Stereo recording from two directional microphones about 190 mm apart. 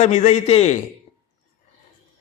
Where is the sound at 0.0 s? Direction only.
35° left (ahead or behind).